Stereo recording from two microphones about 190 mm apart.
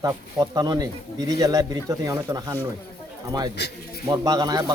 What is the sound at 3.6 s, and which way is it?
Speech, 60° left (ahead or behind).